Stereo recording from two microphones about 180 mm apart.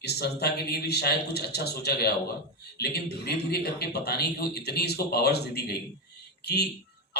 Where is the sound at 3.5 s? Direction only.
65° left (ahead or behind).